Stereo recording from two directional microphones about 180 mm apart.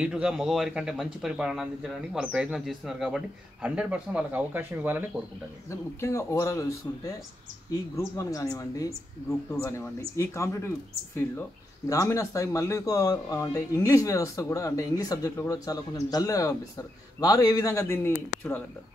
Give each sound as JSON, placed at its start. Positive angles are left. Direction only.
{"t": 0.0, "sound": "speech", "side_deg": -5}
{"t": 5.7, "sound": "speech", "side_deg": 15}
{"t": 8.2, "sound": "speech", "side_deg": 20}
{"t": 11.9, "sound": "speech", "side_deg": 15}